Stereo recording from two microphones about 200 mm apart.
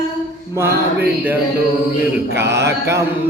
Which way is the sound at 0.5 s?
10° right (ahead or behind).